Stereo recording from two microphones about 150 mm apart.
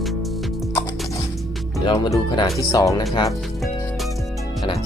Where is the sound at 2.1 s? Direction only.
25° left (ahead or behind).